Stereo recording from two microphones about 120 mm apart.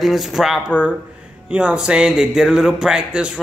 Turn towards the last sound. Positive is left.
turn(degrees=-10)  # may be behind; listen again after turning